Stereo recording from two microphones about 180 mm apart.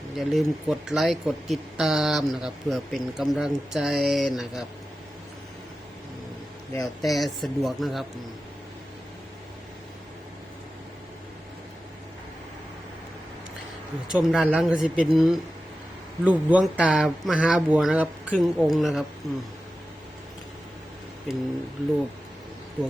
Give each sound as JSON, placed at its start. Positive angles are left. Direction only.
{"t": 0.2, "sound": "speech", "side_deg": 0}
{"t": 7.0, "sound": "speech", "side_deg": 0}
{"t": 14.1, "sound": "speech", "side_deg": -5}
{"t": 21.3, "sound": "speech", "side_deg": 0}